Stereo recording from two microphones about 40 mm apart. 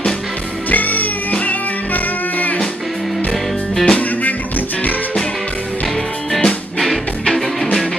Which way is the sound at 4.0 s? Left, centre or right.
Left.